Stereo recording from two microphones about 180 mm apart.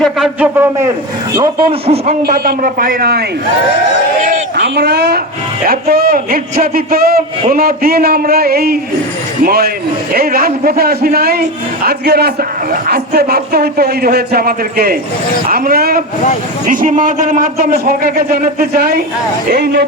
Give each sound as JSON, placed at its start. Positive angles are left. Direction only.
{"t": 0.0, "sound": "speech", "side_deg": -5}
{"t": 2.2, "sound": "a man's voice", "side_deg": -60}
{"t": 4.5, "sound": "a man's voice", "side_deg": -70}